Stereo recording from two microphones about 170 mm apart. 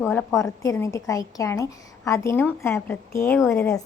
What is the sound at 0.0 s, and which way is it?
A woman's voice, 10° left (ahead or behind).